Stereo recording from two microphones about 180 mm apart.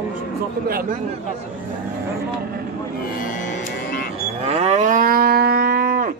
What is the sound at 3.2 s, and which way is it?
Music, 50° left (ahead or behind).